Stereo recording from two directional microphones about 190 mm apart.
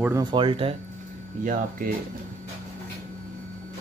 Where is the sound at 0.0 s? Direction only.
15° right (ahead or behind).